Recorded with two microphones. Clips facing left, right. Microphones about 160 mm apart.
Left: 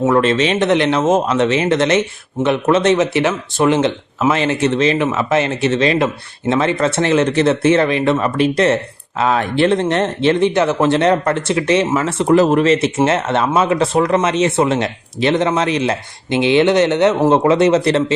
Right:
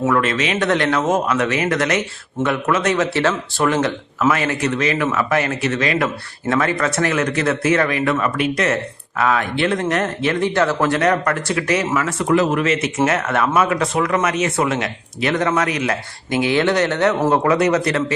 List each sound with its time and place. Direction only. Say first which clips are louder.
0.1 s speech: left 5 dB; 30° left (ahead or behind)